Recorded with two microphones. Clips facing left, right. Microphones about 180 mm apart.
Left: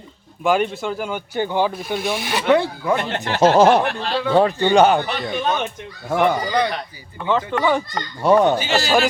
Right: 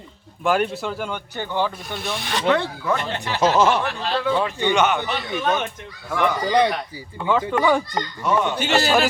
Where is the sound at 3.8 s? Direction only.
55° left (ahead or behind).